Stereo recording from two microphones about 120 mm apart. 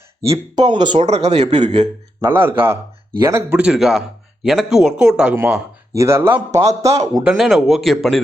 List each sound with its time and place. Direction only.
0.3 s speech: 35° right (ahead or behind)
1.0 s a man's voice: 60° right (ahead or behind)
2.2 s speech: 20° right (ahead or behind)
3.6 s speech: 5° right (ahead or behind)
6.0 s speech: 20° right (ahead or behind)
7.3 s speech: centre (ahead or behind)